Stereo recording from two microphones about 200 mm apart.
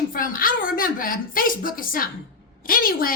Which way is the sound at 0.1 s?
45° left (ahead or behind).